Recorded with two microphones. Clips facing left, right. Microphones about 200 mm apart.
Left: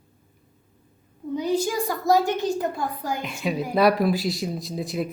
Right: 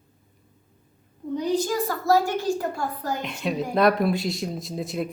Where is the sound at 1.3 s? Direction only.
10° left (ahead or behind).